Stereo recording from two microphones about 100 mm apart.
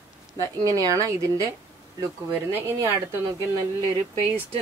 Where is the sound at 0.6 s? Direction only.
35° right (ahead or behind).